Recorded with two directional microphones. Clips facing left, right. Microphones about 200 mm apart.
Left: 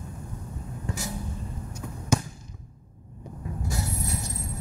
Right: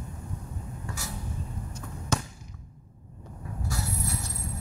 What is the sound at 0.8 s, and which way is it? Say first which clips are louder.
Vehicle: left 6 dB; 20° left (ahead or behind).